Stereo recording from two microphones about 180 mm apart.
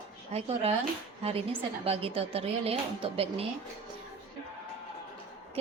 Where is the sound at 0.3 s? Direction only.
35° right (ahead or behind).